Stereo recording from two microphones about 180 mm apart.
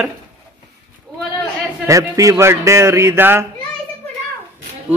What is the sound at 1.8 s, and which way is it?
Speech, 20° right (ahead or behind).